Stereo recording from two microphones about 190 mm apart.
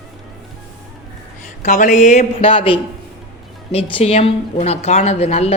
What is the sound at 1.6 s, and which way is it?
Speech, 40° left (ahead or behind).